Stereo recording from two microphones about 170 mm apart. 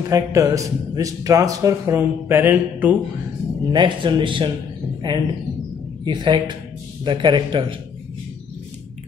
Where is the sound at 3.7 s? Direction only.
30° right (ahead or behind).